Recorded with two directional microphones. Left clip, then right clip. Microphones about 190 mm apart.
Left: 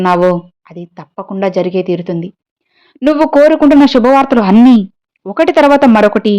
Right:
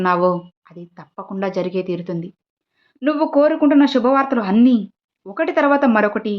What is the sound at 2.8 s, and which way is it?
A woman's voice, 45° left (ahead or behind).